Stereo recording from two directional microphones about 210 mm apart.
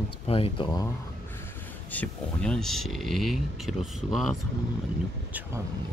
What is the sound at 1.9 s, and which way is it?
Speech, 5° left (ahead or behind).